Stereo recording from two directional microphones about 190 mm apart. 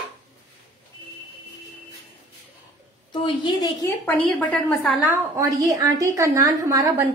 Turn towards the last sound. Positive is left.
turn(degrees=-20)  # may be behind; listen again after turning